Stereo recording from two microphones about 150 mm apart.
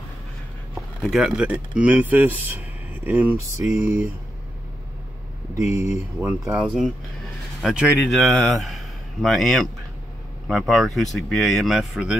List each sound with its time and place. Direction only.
1.0 s speech: 5° right (ahead or behind)
5.5 s speech: 20° right (ahead or behind)
6.5 s speech: 5° right (ahead or behind)
7.8 s a man's voice: 15° left (ahead or behind); by 12.2 s 5° right (ahead or behind)